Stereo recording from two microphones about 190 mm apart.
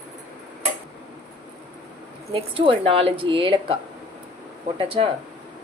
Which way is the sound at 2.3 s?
30° right (ahead or behind).